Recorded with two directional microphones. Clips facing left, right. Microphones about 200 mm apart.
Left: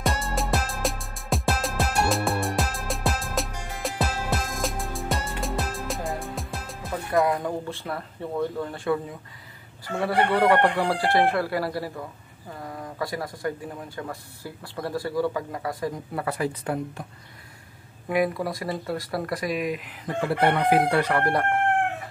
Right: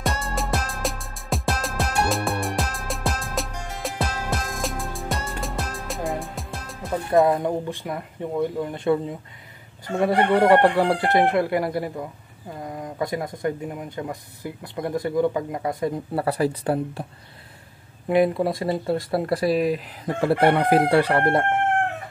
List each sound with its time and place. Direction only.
0.0 s music: centre (ahead or behind)
7.1 s speech: 20° right (ahead or behind)
16.2 s speech: 35° right (ahead or behind)
18.0 s speech: 25° right (ahead or behind)